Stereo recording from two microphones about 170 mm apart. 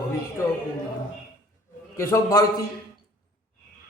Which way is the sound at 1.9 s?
20° left (ahead or behind).